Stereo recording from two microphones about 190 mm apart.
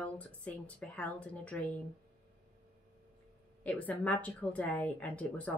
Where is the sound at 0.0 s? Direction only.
5° left (ahead or behind).